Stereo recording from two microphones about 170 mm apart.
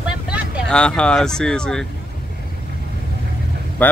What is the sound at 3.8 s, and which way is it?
Speech, 10° left (ahead or behind).